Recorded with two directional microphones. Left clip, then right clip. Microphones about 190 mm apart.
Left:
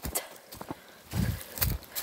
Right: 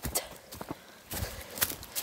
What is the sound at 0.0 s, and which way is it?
Clip-clop, centre (ahead or behind).